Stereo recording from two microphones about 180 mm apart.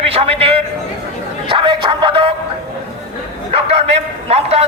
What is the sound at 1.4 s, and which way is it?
Music, 25° right (ahead or behind).